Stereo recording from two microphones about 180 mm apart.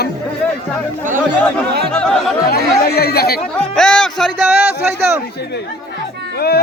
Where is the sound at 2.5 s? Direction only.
60° left (ahead or behind).